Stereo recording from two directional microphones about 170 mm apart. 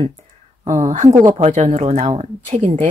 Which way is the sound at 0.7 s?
40° right (ahead or behind).